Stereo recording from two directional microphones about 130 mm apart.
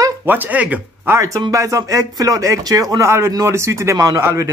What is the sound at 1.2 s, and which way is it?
Speech, 25° right (ahead or behind).